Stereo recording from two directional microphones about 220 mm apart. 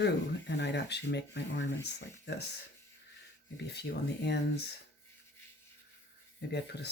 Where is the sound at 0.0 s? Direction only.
55° left (ahead or behind).